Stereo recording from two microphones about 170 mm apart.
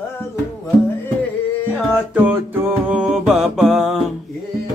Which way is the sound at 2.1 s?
10° right (ahead or behind).